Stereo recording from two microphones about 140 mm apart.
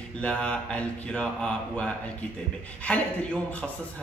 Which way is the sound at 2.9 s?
10° left (ahead or behind).